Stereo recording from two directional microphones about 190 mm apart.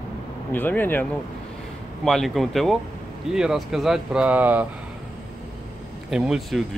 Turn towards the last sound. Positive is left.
turn(degrees=0)  # may be behind; listen again after turning